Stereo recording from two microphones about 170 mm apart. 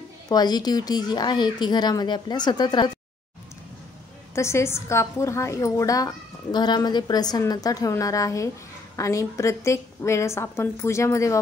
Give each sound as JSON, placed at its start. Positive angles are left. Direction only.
{"t": 0.3, "sound": "a woman's voice", "side_deg": 25}
{"t": 4.4, "sound": "a woman's voice", "side_deg": 15}